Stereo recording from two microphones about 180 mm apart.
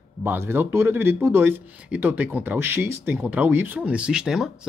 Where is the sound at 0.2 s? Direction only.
10° right (ahead or behind).